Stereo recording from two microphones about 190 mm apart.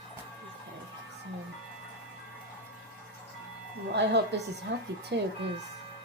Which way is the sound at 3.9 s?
65° right (ahead or behind).